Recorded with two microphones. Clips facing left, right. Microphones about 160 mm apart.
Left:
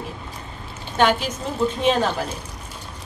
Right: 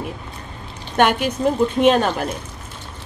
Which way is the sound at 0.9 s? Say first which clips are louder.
Right 2 dB; 60° right (ahead or behind).